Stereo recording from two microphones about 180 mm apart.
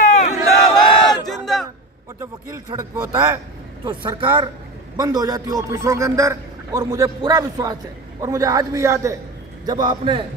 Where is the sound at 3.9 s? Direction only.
25° right (ahead or behind).